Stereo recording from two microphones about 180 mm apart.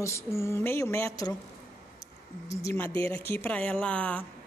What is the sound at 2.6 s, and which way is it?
Speech, 10° left (ahead or behind).